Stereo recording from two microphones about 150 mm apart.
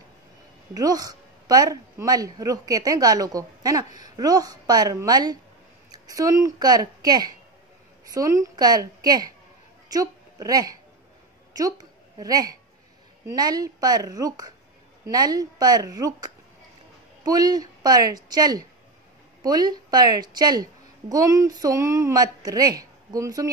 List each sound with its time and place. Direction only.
0.7 s a woman's voice: 25° right (ahead or behind)